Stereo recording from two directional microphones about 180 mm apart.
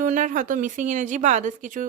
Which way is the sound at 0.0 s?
45° right (ahead or behind).